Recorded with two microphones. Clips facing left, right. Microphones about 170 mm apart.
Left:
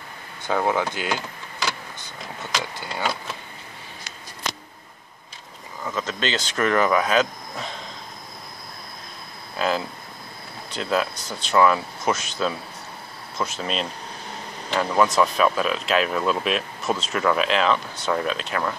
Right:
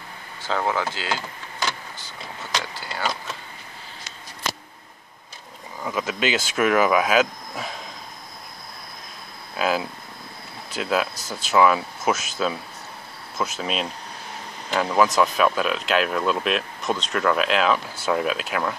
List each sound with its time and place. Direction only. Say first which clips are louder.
0.4 s speech: left 2 dB; 15° left (ahead or behind)
5.9 s speech: right 2 dB; 10° right (ahead or behind)
9.6 s speech: right 1 dB; 5° right (ahead or behind)